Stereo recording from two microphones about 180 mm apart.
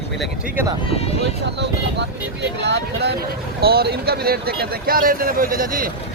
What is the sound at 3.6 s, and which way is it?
Speech, 60° right (ahead or behind).